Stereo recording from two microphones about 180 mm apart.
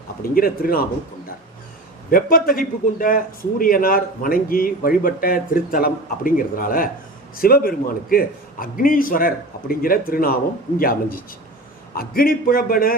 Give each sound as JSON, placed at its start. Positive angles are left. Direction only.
{"t": 0.2, "sound": "speech", "side_deg": 55}
{"t": 2.0, "sound": "a man's voice", "side_deg": 50}